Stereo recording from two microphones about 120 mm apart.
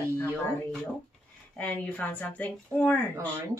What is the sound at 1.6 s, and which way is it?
Speech, 15° left (ahead or behind).